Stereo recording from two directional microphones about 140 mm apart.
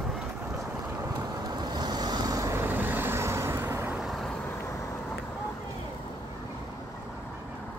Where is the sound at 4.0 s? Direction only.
Centre (ahead or behind).